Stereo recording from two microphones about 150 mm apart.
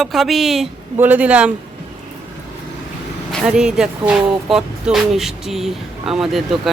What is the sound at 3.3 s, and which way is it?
Speech, 5° right (ahead or behind).